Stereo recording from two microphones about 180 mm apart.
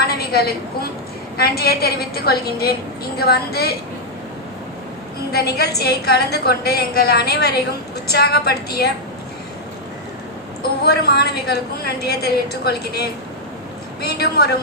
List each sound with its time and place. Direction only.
0.0 s a woman's voice: 60° left (ahead or behind)
5.3 s a woman's voice: 60° left (ahead or behind)
10.6 s a woman's voice: 60° left (ahead or behind)